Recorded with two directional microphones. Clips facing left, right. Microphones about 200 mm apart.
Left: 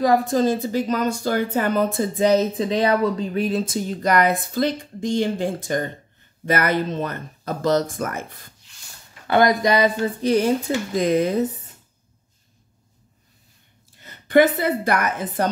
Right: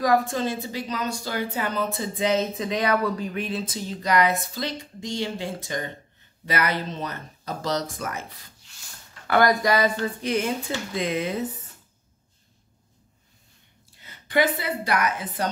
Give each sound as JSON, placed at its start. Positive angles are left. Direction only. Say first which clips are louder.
{"t": 0.0, "sound": "speech", "louder": "left 5 dB", "side_deg": 35}
{"t": 9.3, "sound": "speech", "louder": "left 3 dB", "side_deg": 20}
{"t": 10.2, "sound": "speech", "louder": "left 9 dB", "side_deg": 35}
{"t": 14.0, "sound": "a woman's voice", "louder": "left 7 dB", "side_deg": 55}